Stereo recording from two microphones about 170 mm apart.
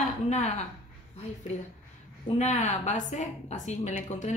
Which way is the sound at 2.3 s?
40° left (ahead or behind).